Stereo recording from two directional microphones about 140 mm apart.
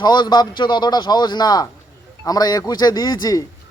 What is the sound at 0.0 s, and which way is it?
A man's voice, 30° left (ahead or behind).